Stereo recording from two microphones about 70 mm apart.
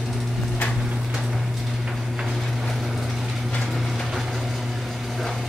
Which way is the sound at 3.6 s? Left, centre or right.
Centre.